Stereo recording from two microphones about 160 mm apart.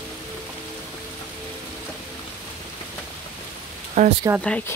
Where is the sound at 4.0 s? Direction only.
40° right (ahead or behind).